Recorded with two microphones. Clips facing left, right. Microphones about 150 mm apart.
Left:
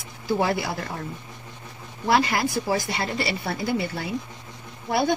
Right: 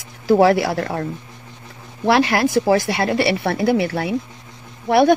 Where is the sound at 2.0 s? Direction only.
90° right.